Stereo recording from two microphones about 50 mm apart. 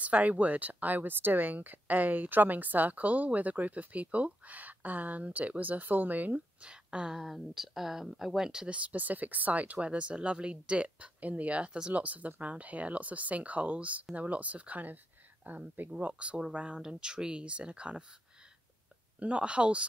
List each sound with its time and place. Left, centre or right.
0.0 s speech: right
6.6 s speech: centre
7.2 s speech: centre
8.6 s speech: right
19.1 s speech: right